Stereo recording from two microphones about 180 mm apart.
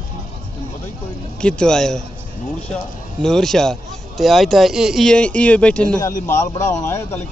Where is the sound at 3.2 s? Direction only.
Centre (ahead or behind).